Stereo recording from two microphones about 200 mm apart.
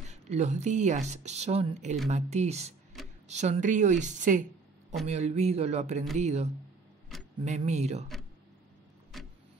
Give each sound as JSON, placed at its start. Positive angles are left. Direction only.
{"t": 0.0, "sound": "speech", "side_deg": -35}
{"t": 9.1, "sound": "vehicle", "side_deg": 0}